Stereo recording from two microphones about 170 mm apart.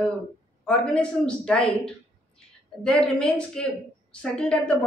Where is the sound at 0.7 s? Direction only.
5° left (ahead or behind).